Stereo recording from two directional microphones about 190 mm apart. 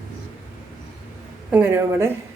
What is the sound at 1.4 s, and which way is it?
Speech, 10° right (ahead or behind).